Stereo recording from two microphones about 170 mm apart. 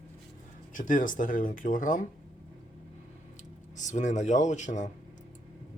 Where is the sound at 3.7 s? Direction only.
45° left (ahead or behind).